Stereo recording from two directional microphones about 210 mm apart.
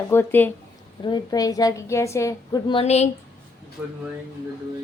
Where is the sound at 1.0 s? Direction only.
20° left (ahead or behind).